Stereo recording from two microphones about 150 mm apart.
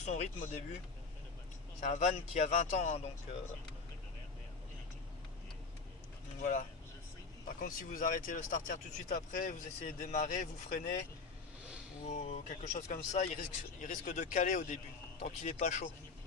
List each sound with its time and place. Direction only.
0.0 s speech: 50° left (ahead or behind)
1.8 s speech: 55° left (ahead or behind)
6.4 s speech: 60° left (ahead or behind)
10.1 s speech: 50° left (ahead or behind)
12.0 s speech: 45° left (ahead or behind)
12.5 s speech: 55° left (ahead or behind)